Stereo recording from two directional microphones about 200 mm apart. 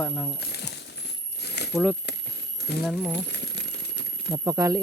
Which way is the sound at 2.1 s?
55° left (ahead or behind).